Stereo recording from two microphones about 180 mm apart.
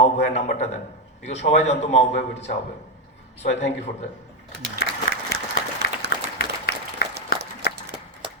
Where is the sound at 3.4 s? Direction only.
40° left (ahead or behind).